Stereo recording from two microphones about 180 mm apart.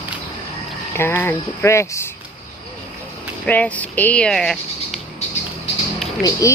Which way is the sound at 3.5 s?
10° left (ahead or behind).